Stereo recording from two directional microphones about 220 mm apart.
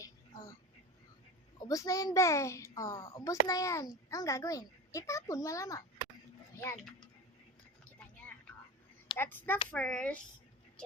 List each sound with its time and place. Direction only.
0.0 s a sound: 15° left (ahead or behind)
1.6 s a child's voice: 15° left (ahead or behind)
9.1 s a child's voice: 10° left (ahead or behind)